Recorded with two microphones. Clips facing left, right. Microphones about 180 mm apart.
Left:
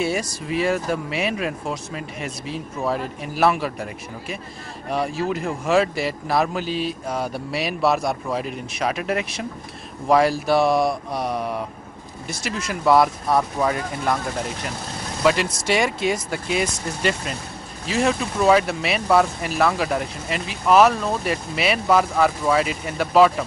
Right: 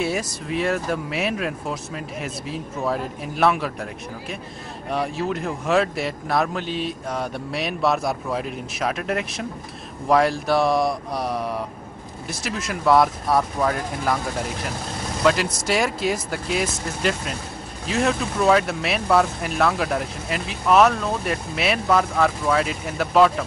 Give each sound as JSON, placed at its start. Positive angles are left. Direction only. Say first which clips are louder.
{"t": 0.0, "sound": "speech", "louder": "left 1 dB", "side_deg": 0}